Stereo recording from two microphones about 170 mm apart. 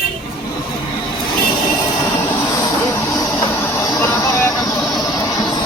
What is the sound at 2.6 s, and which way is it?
Music, 20° left (ahead or behind).